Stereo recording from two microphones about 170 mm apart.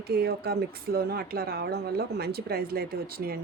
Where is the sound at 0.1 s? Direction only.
70° right (ahead or behind).